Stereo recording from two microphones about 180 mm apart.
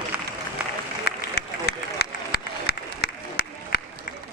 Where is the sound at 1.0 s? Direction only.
65° left (ahead or behind).